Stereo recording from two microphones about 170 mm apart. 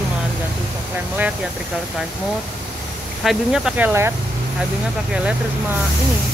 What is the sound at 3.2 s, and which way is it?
Speech, 5° right (ahead or behind).